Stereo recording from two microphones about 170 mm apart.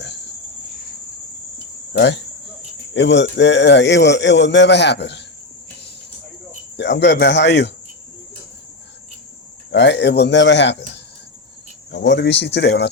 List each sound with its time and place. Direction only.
1.9 s speech: 90° left
6.7 s speech: 90° left
9.7 s speech: 90° left